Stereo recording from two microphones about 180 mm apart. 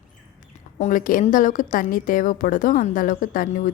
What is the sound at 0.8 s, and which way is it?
A woman's voice, 45° left (ahead or behind).